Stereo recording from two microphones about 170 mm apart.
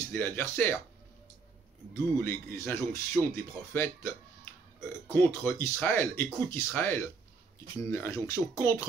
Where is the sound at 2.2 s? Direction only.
15° left (ahead or behind).